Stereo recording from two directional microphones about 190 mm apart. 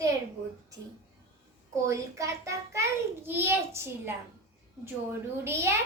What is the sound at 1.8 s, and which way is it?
A child's voice, 15° right (ahead or behind).